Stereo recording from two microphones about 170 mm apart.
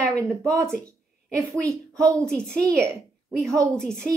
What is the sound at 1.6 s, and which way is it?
Speech, 20° right (ahead or behind).